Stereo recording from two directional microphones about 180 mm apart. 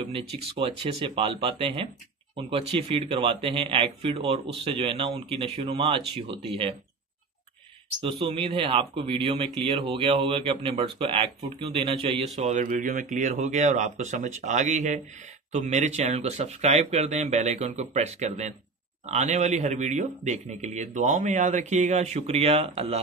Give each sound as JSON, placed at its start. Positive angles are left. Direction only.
{"t": 0.0, "sound": "speech", "side_deg": -35}
{"t": 8.0, "sound": "speech", "side_deg": -30}
{"t": 12.4, "sound": "speech", "side_deg": -40}